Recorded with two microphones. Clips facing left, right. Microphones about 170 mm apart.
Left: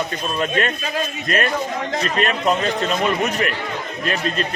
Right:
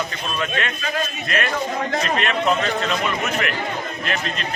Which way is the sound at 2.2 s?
40° left (ahead or behind).